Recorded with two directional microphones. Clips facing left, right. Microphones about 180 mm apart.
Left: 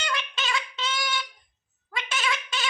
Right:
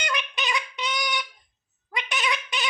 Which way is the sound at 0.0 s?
15° right (ahead or behind).